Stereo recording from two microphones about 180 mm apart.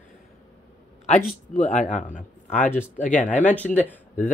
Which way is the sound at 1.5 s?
45° left (ahead or behind).